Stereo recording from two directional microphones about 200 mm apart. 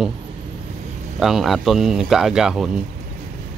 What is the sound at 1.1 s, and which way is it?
Speech, centre (ahead or behind).